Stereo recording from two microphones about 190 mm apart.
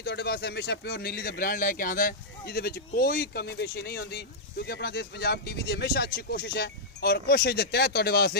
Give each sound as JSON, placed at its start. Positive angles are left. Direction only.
{"t": 0.0, "sound": "a man's voice", "side_deg": 60}